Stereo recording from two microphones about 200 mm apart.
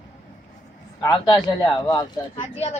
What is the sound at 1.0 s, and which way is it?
Child singing, 20° left (ahead or behind).